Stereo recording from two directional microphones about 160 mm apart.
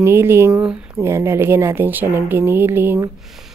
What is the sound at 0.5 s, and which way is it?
Speech, 5° right (ahead or behind).